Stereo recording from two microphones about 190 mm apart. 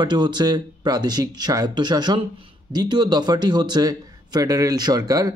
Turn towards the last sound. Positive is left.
turn(degrees=-20)  # may be behind; listen again after turning